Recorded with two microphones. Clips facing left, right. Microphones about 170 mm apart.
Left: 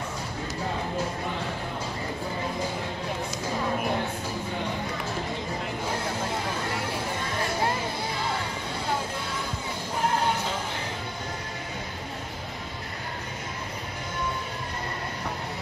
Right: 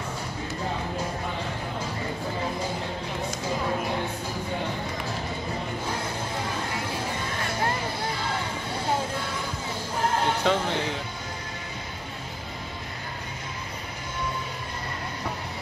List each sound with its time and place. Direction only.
10.4 s music: 70° right (ahead or behind)